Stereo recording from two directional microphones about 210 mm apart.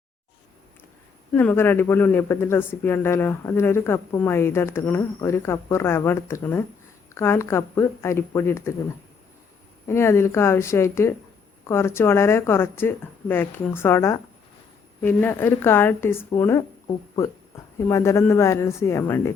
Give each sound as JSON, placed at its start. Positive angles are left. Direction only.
{"t": 1.3, "sound": "speech", "side_deg": 10}
{"t": 9.8, "sound": "speech", "side_deg": 10}